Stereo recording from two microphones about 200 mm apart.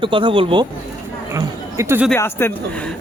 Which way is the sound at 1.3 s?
15° right (ahead or behind).